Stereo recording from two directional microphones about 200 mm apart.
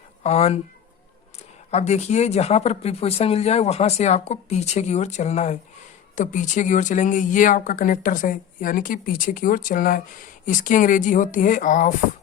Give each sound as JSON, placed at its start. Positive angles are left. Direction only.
{"t": 0.2, "sound": "speech", "side_deg": 30}
{"t": 1.7, "sound": "speech", "side_deg": 35}